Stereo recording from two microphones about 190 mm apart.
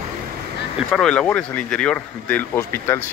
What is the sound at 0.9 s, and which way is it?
Speech, 5° left (ahead or behind).